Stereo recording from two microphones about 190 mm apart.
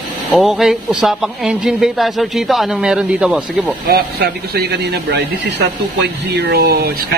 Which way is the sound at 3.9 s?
55° right (ahead or behind).